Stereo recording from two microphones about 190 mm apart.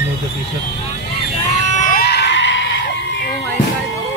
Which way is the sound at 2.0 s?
60° left (ahead or behind).